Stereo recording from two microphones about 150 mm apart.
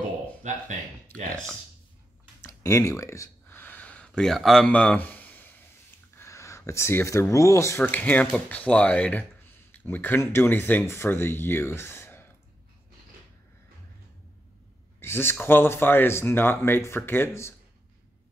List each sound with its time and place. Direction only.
0.4 s speech: 50° right (ahead or behind)
2.4 s a sound: 20° left (ahead or behind)
6.1 s speech: 20° left (ahead or behind)
15.0 s speech: 15° left (ahead or behind)